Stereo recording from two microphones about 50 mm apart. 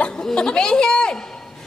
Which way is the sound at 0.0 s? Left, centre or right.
Centre.